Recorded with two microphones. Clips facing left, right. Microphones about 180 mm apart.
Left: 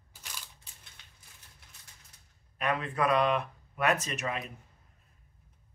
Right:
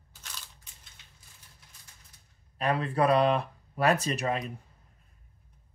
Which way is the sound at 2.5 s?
35° right (ahead or behind).